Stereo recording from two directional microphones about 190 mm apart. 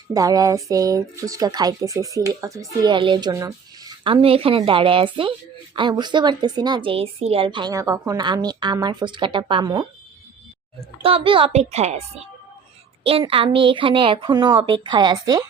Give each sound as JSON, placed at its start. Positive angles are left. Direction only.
{"t": 0.1, "sound": "a woman's voice", "side_deg": -20}
{"t": 11.0, "sound": "a child's voice", "side_deg": -30}